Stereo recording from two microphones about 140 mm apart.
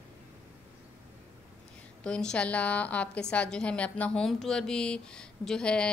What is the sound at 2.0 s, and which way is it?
A woman's voice, 5° left (ahead or behind).